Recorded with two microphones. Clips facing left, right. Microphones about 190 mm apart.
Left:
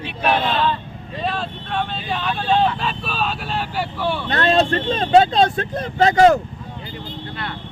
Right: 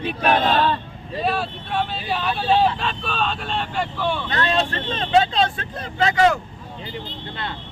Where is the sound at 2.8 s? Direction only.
5° left (ahead or behind).